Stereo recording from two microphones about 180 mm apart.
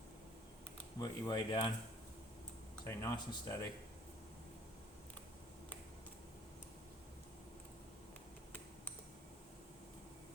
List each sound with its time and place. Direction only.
0.9 s speech: 25° left (ahead or behind)
2.8 s speech: 15° left (ahead or behind)